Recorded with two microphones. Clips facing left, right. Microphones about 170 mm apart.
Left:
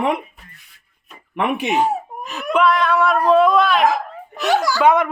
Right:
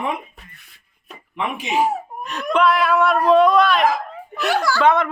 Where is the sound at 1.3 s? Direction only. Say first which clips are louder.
Left 6 dB; 65° left (ahead or behind).